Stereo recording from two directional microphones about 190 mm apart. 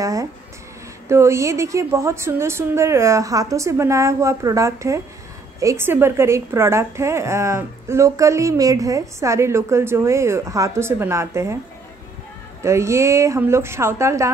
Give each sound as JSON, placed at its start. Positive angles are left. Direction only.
{"t": 0.0, "sound": "a sound", "side_deg": -15}
{"t": 1.0, "sound": "a woman's voice", "side_deg": -15}
{"t": 12.6, "sound": "a woman's voice", "side_deg": -15}